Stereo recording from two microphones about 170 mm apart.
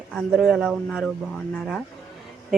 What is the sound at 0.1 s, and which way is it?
Speech, 5° left (ahead or behind).